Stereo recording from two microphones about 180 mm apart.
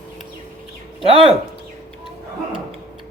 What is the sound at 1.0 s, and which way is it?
Speech, 30° right (ahead or behind).